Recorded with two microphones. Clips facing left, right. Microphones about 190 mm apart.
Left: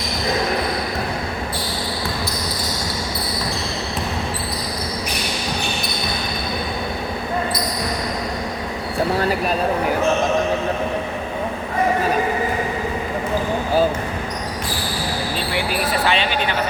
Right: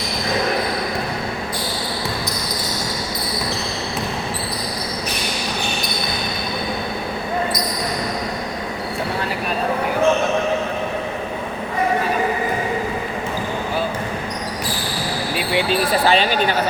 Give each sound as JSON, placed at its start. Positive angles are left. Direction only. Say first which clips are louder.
{"t": 15.7, "sound": "sheep", "louder": "right 4 dB", "side_deg": -35}